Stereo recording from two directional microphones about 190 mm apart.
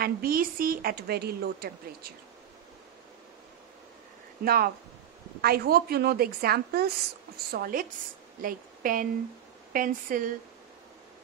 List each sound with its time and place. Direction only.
0.0 s a woman's voice: 50° right (ahead or behind)
4.5 s a woman's voice: 50° right (ahead or behind)